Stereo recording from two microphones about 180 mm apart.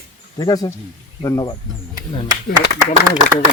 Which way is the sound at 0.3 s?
20° left (ahead or behind).